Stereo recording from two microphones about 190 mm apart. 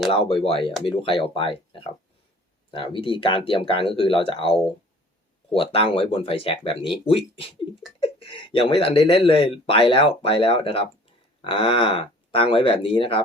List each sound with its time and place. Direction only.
0.1 s speech: 30° left (ahead or behind)